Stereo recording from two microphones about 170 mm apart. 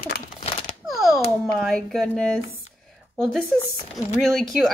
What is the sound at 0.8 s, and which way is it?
Speech, centre (ahead or behind).